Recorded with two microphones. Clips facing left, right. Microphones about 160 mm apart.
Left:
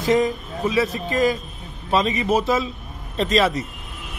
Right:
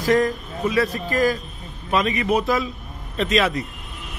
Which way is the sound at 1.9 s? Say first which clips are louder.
Left 1 dB; 30° left (ahead or behind).